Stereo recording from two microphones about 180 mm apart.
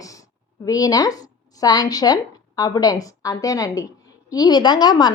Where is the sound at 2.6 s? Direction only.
20° left (ahead or behind).